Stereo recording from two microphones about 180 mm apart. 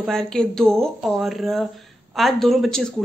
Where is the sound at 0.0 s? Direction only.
5° left (ahead or behind).